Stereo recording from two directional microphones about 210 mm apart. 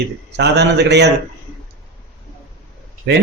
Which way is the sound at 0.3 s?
55° right (ahead or behind).